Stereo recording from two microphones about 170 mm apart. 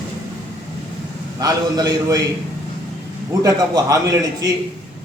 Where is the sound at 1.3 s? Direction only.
20° right (ahead or behind).